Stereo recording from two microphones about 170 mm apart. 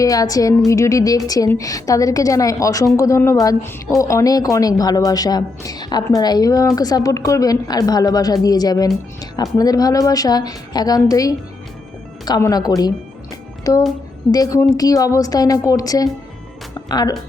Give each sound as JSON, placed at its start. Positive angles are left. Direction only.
{"t": 0.0, "sound": "a woman's voice", "side_deg": 20}